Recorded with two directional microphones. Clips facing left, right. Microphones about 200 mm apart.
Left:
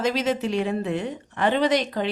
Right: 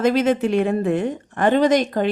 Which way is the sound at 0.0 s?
55° right (ahead or behind).